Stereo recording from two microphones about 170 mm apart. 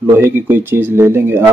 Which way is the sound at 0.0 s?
15° right (ahead or behind).